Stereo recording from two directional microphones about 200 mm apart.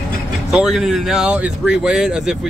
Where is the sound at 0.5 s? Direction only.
5° right (ahead or behind).